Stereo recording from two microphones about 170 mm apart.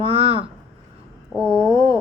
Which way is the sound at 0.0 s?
30° right (ahead or behind).